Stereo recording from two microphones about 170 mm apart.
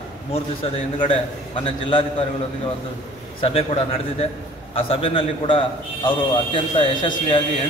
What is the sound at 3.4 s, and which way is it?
A man's voice, 35° left (ahead or behind).